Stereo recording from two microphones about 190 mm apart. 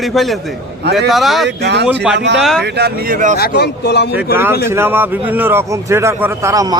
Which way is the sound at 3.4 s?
60° left (ahead or behind).